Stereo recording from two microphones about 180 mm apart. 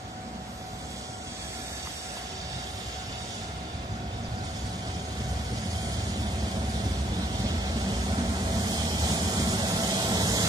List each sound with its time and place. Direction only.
8.6 s vehicle: 20° right (ahead or behind)